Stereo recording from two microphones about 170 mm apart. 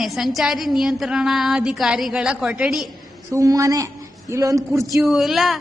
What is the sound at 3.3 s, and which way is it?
A man's voice, 20° right (ahead or behind).